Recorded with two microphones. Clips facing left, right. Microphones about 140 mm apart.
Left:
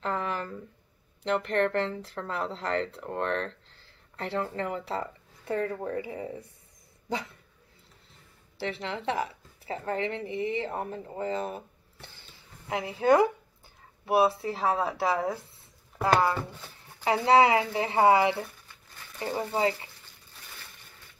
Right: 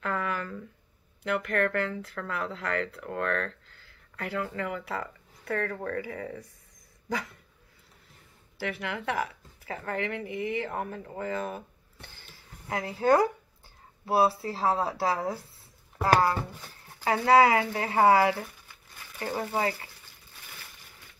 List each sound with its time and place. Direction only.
0.0 s a sound: 30° left (ahead or behind)
1.2 s speech: 30° left (ahead or behind)
8.5 s speech: 25° left (ahead or behind)
12.6 s speech: 20° left (ahead or behind)
14.6 s a woman's voice: 30° right (ahead or behind)
16.1 s speech: 5° right (ahead or behind)
17.0 s speech: 20° left (ahead or behind)